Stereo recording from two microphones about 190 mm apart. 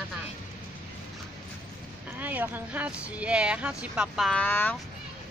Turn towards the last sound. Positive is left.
turn(degrees=10)  # may be behind; listen again after turning